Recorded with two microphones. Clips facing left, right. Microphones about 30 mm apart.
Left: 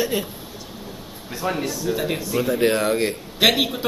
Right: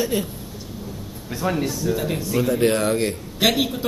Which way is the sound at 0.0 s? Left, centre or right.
Centre.